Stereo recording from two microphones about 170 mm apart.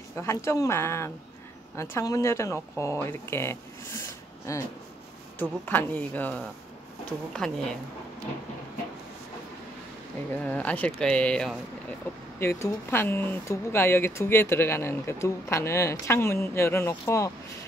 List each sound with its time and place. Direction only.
0.1 s speech: 15° left (ahead or behind)
7.4 s a woman's voice: 5° left (ahead or behind)
10.3 s speech: 10° left (ahead or behind)
12.4 s speech: 15° left (ahead or behind)